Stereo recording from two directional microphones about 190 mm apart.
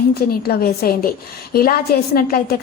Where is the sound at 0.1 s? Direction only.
55° left (ahead or behind).